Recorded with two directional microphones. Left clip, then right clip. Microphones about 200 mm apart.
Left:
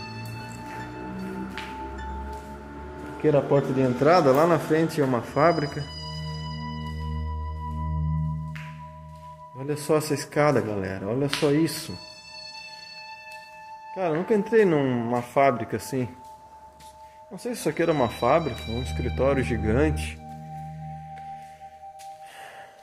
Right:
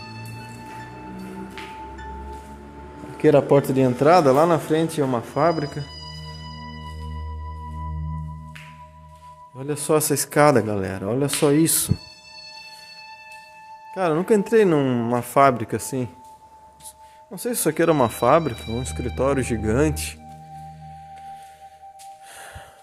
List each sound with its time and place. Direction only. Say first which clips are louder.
0.0 s music: even; centre (ahead or behind)
3.2 s speech: right 5 dB; 55° right (ahead or behind)
4.0 s a man's voice: right 3 dB; 30° right (ahead or behind)
5.9 s music: left 1 dB; centre (ahead or behind)
9.6 s a man's voice: right 3 dB; 30° right (ahead or behind)
13.9 s speech: right 5 dB; 45° right (ahead or behind)
15.8 s a man's voice: right 2 dB; 25° right (ahead or behind)
17.3 s speech: right 5 dB; 45° right (ahead or behind)
18.4 s speech: right 3 dB; centre (ahead or behind)
18.9 s a man's voice: right 1 dB; 30° right (ahead or behind)